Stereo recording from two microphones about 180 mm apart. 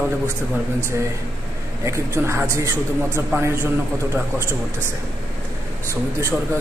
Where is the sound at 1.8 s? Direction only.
15° right (ahead or behind).